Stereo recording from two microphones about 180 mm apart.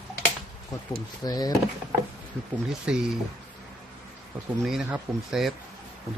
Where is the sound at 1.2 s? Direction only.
20° left (ahead or behind).